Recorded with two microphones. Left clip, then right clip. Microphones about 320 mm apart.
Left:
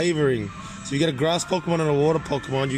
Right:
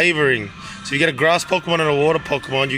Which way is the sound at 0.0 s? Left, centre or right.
Right.